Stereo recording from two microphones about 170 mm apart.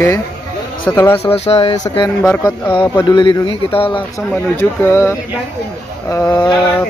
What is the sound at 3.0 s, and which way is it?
Speech, 25° left (ahead or behind).